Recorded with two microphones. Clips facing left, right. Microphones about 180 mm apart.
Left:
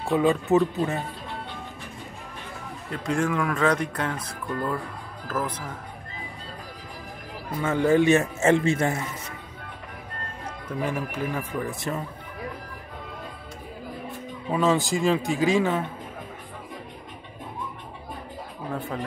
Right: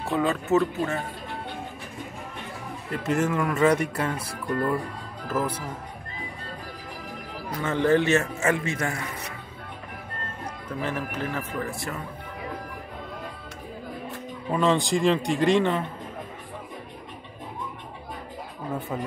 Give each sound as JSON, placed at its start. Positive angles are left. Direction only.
{"t": 0.1, "sound": "speech", "side_deg": 15}
{"t": 2.9, "sound": "speech", "side_deg": -5}
{"t": 7.6, "sound": "speech", "side_deg": 10}
{"t": 8.4, "sound": "a man's voice", "side_deg": 25}
{"t": 10.8, "sound": "speech", "side_deg": 10}
{"t": 14.5, "sound": "a man's voice", "side_deg": 5}
{"t": 18.7, "sound": "a man's voice", "side_deg": 0}